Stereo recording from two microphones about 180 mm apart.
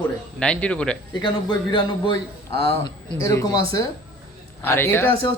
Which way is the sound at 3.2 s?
15° left (ahead or behind).